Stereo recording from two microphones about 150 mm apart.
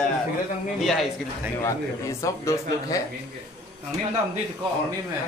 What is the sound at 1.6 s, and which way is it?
Speech, 20° left (ahead or behind).